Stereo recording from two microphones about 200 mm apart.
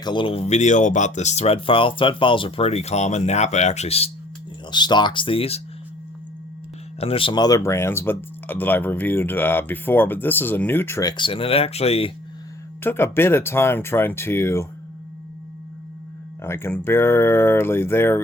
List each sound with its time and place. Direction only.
0.0 s speech: 25° left (ahead or behind)
7.0 s speech: 25° left (ahead or behind)
11.2 s speech: 25° left (ahead or behind)
12.8 s speech: 10° left (ahead or behind)
16.4 s speech: 10° left (ahead or behind)